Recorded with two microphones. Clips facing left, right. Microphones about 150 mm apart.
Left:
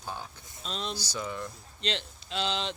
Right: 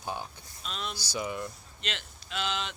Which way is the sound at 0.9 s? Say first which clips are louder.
Right 1 dB; 10° right (ahead or behind).